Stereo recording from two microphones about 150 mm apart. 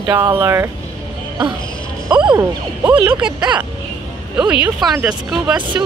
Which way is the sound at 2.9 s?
5° right (ahead or behind).